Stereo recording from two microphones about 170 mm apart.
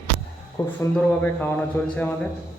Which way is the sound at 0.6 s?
20° left (ahead or behind).